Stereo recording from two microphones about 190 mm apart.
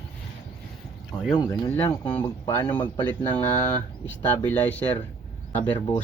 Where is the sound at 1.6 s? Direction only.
15° left (ahead or behind).